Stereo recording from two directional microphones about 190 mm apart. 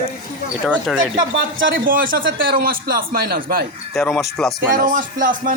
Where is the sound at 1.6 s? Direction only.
50° right (ahead or behind).